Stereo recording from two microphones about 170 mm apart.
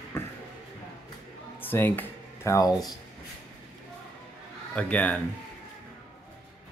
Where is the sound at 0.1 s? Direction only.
15° left (ahead or behind).